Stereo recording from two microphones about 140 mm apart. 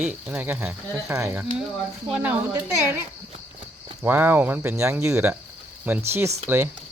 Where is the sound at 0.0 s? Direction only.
10° right (ahead or behind).